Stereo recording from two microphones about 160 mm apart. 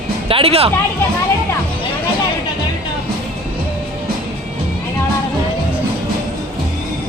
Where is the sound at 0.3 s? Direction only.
35° right (ahead or behind).